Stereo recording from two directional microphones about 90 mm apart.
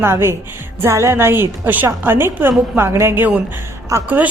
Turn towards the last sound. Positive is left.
turn(degrees=-35)  # may be behind; listen again after turning